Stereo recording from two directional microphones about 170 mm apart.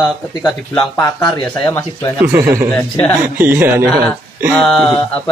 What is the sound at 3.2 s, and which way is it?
Speech, 10° right (ahead or behind).